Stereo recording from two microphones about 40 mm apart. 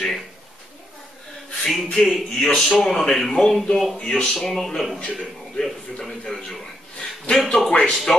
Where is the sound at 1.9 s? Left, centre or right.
Centre.